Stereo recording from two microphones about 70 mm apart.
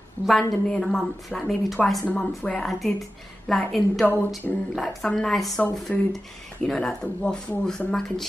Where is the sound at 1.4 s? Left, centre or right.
Centre.